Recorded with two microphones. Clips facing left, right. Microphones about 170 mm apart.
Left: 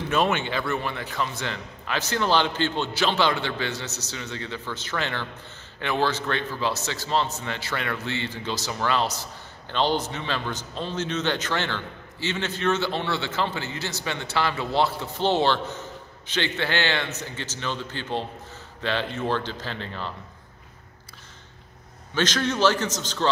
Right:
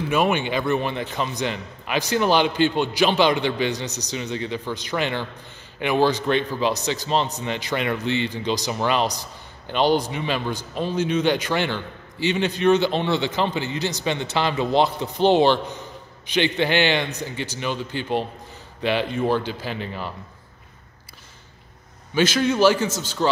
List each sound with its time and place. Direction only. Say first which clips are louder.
0.1 s a man's voice: right 2 dB; 15° right (ahead or behind)
22.1 s a man's voice: right 5 dB; 10° right (ahead or behind)